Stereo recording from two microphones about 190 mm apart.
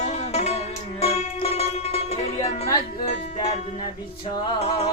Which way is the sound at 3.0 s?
35° left (ahead or behind).